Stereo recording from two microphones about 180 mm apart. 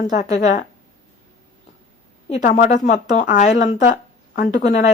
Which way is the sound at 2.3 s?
45° left (ahead or behind).